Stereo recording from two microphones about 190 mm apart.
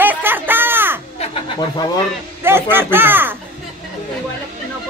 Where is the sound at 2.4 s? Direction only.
10° right (ahead or behind).